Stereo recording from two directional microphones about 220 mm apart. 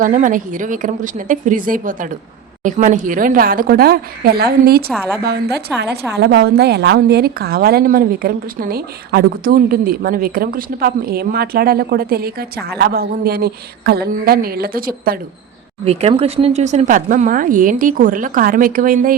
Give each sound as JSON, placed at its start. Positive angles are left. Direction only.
{"t": 0.0, "sound": "a woman's voice", "side_deg": -35}
{"t": 15.8, "sound": "speech", "side_deg": -25}